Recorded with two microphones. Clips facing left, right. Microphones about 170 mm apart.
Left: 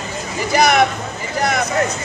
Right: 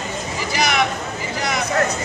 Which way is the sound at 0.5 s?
50° left (ahead or behind).